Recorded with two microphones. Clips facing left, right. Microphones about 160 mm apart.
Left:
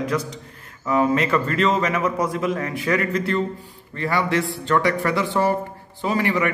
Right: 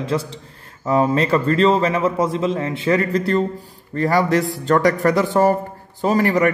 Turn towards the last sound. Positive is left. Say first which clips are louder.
# right 5 dB
turn(degrees=-40)  # may be behind; listen again after turning